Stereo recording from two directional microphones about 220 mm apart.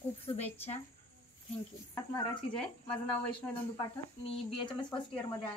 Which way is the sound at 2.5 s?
5° left (ahead or behind).